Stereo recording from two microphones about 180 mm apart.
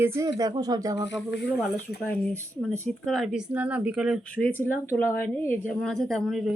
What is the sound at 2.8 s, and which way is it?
Speech, centre (ahead or behind).